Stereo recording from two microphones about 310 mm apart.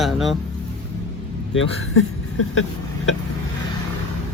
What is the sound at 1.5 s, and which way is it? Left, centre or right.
Speech, left.